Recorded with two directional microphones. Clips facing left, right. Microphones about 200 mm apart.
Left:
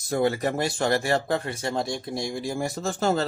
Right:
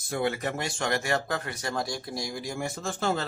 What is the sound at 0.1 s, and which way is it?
Speech, 35° left (ahead or behind).